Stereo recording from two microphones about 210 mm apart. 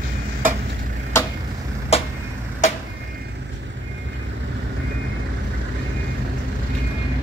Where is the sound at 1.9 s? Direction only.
30° left (ahead or behind).